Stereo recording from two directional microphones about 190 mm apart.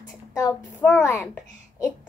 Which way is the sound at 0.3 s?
15° left (ahead or behind).